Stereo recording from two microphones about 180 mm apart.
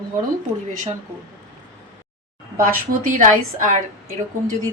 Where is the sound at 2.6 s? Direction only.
45° right (ahead or behind).